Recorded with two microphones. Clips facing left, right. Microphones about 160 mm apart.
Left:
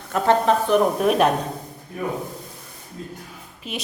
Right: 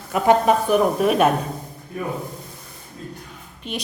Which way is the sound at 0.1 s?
10° right (ahead or behind).